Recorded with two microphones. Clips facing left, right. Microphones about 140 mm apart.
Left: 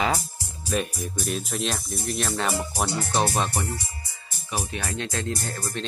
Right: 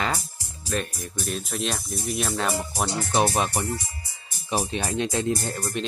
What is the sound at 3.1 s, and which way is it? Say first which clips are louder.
Speech: right 3 dB; 15° right (ahead or behind).